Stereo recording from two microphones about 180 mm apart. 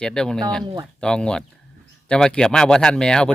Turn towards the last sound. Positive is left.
turn(degrees=5)  # may be behind; listen again after turning